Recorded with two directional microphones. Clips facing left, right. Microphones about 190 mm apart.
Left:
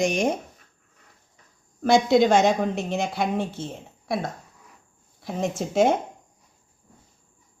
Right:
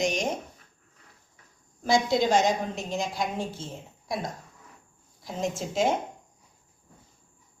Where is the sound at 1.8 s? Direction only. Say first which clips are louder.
Left 6 dB; 65° left (ahead or behind).